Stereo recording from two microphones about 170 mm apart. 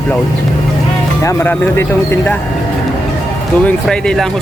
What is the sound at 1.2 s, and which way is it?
Speech, 10° left (ahead or behind).